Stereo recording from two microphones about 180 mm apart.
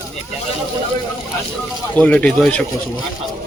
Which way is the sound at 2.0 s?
5° left (ahead or behind).